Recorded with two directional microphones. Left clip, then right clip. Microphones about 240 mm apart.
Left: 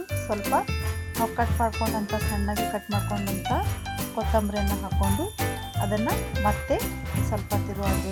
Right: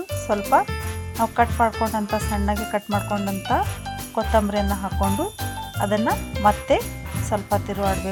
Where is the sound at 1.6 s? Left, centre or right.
Centre.